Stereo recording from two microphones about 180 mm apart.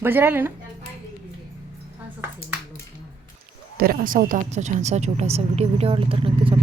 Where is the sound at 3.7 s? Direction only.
50° right (ahead or behind).